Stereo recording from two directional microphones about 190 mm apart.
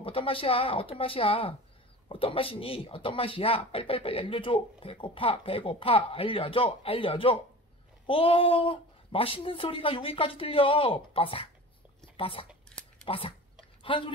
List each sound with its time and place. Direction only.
0.0 s speech: 30° left (ahead or behind)
12.4 s a sound: 5° left (ahead or behind)
13.0 s speech: 30° left (ahead or behind)